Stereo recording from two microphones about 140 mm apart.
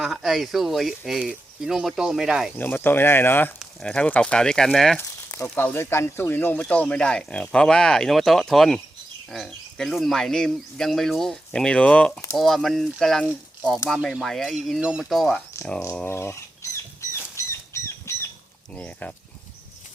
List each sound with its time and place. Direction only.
0.0 s speech: centre (ahead or behind)
2.6 s speech: 15° left (ahead or behind)
4.9 s a sound: 15° left (ahead or behind)
5.7 s speech: 20° left (ahead or behind)
17.3 s bird flight: 20° left (ahead or behind)
18.8 s speech: 10° left (ahead or behind)